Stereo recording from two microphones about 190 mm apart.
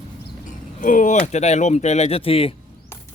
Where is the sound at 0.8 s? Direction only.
45° left (ahead or behind).